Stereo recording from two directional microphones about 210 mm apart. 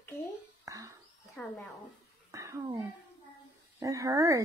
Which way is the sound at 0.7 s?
15° right (ahead or behind).